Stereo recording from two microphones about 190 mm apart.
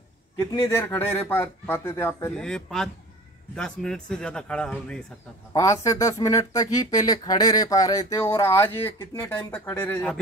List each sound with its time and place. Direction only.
0.4 s speech: 15° left (ahead or behind)
2.4 s speech: 5° left (ahead or behind)
5.5 s speech: 15° left (ahead or behind)